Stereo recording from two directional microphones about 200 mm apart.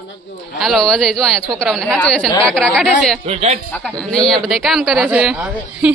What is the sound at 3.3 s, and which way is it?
Speech, 30° right (ahead or behind).